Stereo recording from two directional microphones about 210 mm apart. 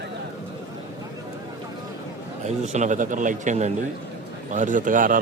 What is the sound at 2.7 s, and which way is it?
Speech, 35° right (ahead or behind).